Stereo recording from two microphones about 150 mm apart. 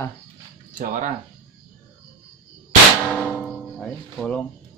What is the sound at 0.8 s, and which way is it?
Speech, 60° right (ahead or behind).